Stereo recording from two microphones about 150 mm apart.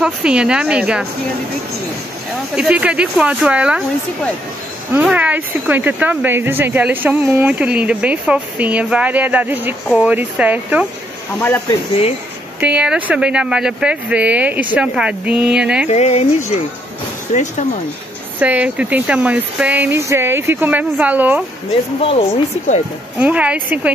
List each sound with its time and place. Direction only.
0.0 s speech: 5° right (ahead or behind)
2.5 s speech: 5° right (ahead or behind)
4.9 s speech: 10° right (ahead or behind)
11.3 s speech: 15° left (ahead or behind)
12.5 s speech: 10° right (ahead or behind)
15.9 s speech: 45° left (ahead or behind)
18.4 s speech: 10° right (ahead or behind)
22.0 s speech: 40° left (ahead or behind)
23.1 s speech: 10° right (ahead or behind)